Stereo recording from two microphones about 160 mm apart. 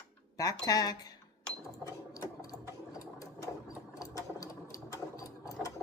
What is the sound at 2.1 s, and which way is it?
Sewing machine, 20° left (ahead or behind).